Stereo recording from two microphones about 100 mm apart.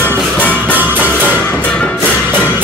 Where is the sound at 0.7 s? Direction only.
20° right (ahead or behind).